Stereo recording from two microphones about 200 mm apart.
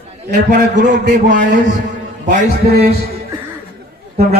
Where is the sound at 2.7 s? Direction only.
50° right (ahead or behind).